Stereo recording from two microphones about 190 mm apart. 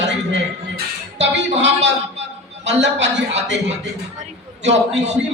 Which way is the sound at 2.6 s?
65° right (ahead or behind).